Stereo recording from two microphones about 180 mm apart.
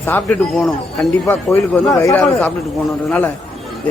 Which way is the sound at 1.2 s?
15° left (ahead or behind).